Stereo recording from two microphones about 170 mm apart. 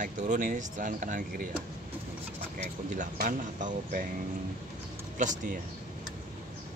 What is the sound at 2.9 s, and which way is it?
Speech, 50° right (ahead or behind).